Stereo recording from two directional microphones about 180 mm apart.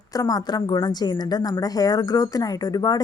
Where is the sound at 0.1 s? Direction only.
20° left (ahead or behind).